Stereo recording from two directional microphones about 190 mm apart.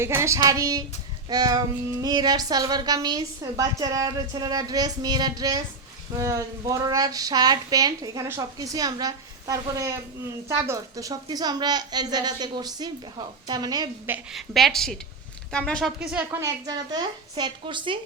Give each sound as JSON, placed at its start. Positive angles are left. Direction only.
{"t": 0.0, "sound": "child singing", "side_deg": -15}
{"t": 1.3, "sound": "speech", "side_deg": -20}
{"t": 14.1, "sound": "a woman's voice", "side_deg": 0}
{"t": 16.6, "sound": "speech", "side_deg": -20}